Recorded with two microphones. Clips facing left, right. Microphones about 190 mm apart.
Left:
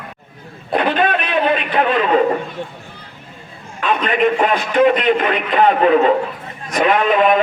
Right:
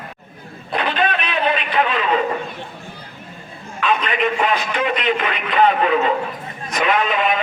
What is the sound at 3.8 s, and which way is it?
A man's voice, 50° left (ahead or behind).